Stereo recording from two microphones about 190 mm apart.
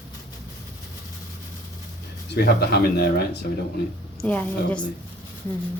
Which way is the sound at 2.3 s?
60° left (ahead or behind).